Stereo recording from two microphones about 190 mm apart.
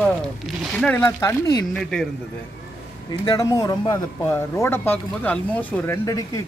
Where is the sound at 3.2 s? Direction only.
20° left (ahead or behind).